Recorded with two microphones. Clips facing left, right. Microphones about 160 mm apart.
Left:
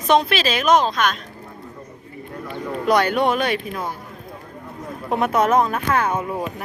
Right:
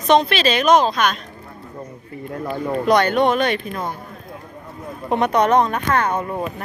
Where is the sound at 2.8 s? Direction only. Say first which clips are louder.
Right 1 dB; 5° left (ahead or behind).